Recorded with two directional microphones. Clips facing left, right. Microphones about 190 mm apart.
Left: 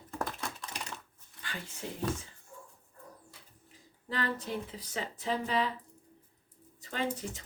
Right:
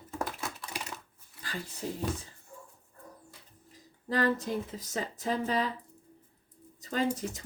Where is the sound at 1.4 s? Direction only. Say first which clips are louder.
Right 4 dB; 35° right (ahead or behind).